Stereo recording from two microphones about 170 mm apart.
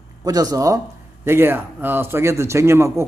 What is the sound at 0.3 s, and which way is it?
A man's voice, 20° right (ahead or behind).